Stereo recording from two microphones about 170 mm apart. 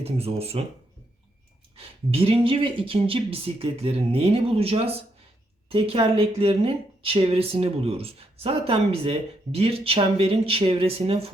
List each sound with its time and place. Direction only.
0.0 s a woman's voice: 35° right (ahead or behind)
1.7 s a woman's voice: 35° right (ahead or behind)